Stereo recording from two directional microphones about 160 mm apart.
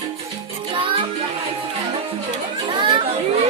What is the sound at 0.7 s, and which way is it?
Music, 30° right (ahead or behind).